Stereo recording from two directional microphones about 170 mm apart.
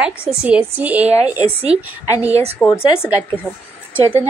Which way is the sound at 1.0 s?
40° right (ahead or behind).